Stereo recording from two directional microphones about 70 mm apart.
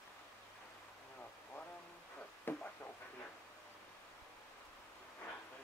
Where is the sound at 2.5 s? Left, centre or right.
Left.